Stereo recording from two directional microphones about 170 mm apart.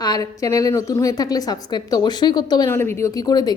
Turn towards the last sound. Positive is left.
turn(degrees=25)  # may be behind; listen again after turning